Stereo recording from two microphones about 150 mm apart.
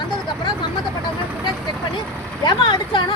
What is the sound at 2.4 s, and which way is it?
Speech, 30° left (ahead or behind).